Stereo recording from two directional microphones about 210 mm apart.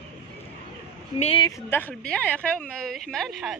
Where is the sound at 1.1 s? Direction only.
25° left (ahead or behind).